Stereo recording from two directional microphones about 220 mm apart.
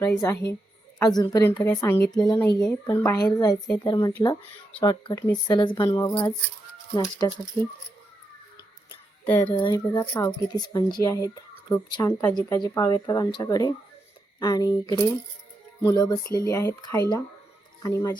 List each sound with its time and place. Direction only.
0.0 s speech: 15° left (ahead or behind)
9.2 s speech: 5° left (ahead or behind)
9.5 s speech: 20° left (ahead or behind)